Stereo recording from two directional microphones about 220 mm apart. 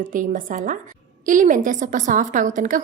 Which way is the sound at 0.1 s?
35° right (ahead or behind).